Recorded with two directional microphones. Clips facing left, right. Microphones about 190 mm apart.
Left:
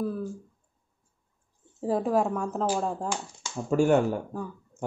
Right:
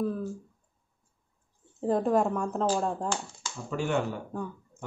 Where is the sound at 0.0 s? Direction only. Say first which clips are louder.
Even; 5° left (ahead or behind).